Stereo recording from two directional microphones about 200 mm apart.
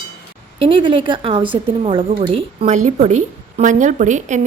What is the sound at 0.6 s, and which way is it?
A woman's voice, 25° right (ahead or behind).